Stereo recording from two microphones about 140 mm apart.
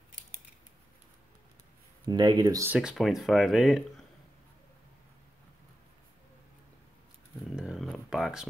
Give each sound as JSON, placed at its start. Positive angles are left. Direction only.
{"t": 2.0, "sound": "speech", "side_deg": -30}
{"t": 2.8, "sound": "speech", "side_deg": -5}
{"t": 7.5, "sound": "a sound", "side_deg": -5}